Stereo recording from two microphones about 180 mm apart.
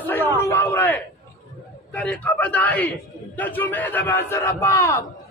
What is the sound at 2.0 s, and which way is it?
A man's voice, 5° left (ahead or behind).